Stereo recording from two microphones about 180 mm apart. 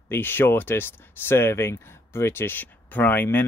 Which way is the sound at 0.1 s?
10° left (ahead or behind).